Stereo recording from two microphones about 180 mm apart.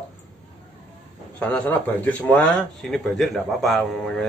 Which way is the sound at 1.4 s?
10° left (ahead or behind).